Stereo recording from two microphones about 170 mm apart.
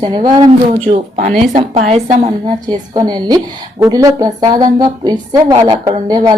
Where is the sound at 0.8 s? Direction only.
40° right (ahead or behind).